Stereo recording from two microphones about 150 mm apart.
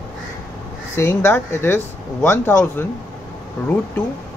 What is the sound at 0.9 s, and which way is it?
Speech, 15° left (ahead or behind).